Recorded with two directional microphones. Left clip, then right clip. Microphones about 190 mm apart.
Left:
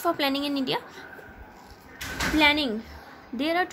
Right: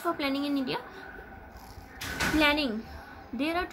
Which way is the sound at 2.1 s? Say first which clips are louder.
Left 4 dB; 40° left (ahead or behind).